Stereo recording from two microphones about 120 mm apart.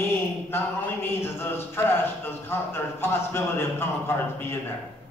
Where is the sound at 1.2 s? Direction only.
20° left (ahead or behind).